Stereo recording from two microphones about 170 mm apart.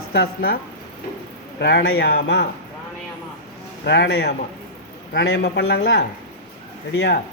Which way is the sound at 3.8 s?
90° left.